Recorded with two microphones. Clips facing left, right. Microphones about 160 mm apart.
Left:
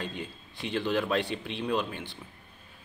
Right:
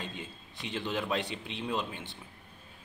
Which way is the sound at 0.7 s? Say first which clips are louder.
Left 5 dB; 20° right (ahead or behind).